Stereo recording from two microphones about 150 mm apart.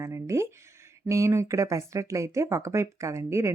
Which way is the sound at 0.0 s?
20° right (ahead or behind).